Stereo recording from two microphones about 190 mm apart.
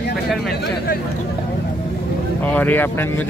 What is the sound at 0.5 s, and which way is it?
Speech, 55° left (ahead or behind).